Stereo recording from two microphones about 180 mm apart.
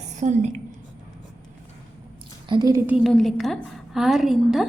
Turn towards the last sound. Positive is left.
turn(degrees=0)  # may be behind; listen again after turning